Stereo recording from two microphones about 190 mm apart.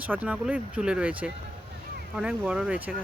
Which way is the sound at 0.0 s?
10° right (ahead or behind).